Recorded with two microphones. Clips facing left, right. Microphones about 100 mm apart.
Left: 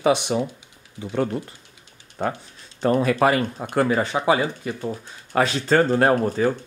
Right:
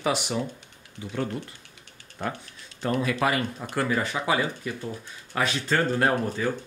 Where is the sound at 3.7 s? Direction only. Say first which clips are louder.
Left 6 dB; 30° left (ahead or behind).